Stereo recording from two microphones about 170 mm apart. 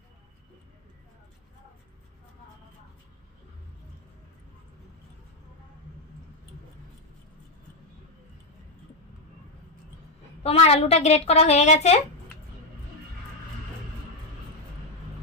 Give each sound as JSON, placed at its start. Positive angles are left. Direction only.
{"t": 10.4, "sound": "a woman's voice", "side_deg": 35}